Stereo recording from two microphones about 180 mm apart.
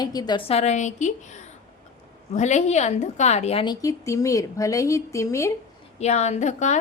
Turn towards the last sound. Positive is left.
turn(degrees=40)  # may be behind; listen again after turning